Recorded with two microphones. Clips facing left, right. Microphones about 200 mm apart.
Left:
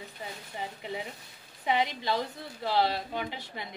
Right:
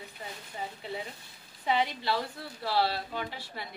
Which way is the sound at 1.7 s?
15° left (ahead or behind).